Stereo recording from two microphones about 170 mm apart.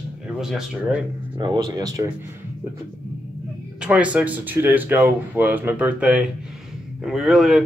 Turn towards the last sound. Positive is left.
turn(degrees=0)  # may be behind; listen again after turning